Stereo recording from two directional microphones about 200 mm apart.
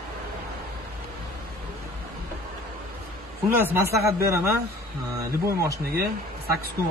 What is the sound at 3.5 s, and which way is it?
Speech, 10° right (ahead or behind).